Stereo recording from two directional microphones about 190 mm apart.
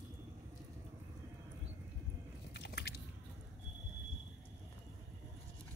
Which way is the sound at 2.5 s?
60° left (ahead or behind).